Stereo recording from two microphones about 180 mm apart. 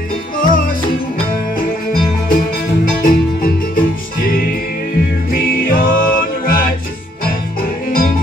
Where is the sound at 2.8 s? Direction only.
50° left (ahead or behind).